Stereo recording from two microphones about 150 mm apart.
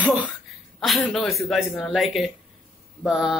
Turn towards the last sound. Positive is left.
turn(degrees=-5)  # may be behind; listen again after turning